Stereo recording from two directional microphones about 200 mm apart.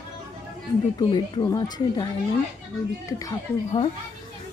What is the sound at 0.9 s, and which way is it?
Speech, 20° left (ahead or behind).